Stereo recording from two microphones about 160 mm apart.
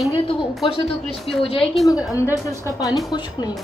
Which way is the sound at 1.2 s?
35° left (ahead or behind).